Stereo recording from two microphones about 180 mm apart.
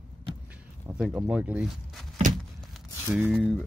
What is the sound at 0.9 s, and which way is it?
Speech, 5° right (ahead or behind).